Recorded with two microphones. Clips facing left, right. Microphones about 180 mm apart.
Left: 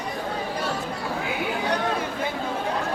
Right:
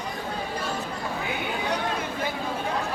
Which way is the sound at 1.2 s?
5° left (ahead or behind).